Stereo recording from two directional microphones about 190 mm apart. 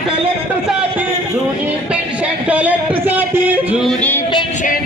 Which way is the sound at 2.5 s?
10° right (ahead or behind).